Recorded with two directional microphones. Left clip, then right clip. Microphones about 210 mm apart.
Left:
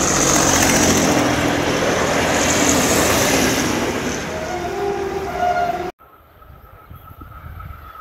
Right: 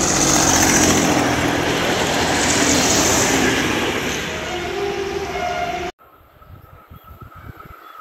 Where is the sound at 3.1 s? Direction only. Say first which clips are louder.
Even; 55° left (ahead or behind); by 5.0 s 35° left (ahead or behind).